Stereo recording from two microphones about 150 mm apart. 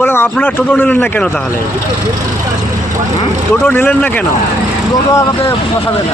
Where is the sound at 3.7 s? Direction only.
15° left (ahead or behind).